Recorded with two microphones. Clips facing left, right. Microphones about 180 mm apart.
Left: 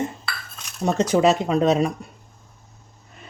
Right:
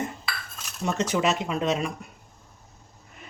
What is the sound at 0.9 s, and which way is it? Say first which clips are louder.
Speech: left 7 dB; 35° left (ahead or behind).